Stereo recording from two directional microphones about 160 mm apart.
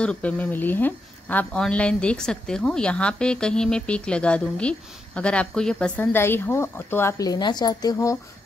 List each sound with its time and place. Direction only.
0.0 s speech: 5° left (ahead or behind)